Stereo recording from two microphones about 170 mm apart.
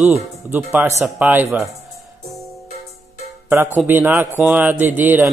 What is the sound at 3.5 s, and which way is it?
Speech, 10° right (ahead or behind).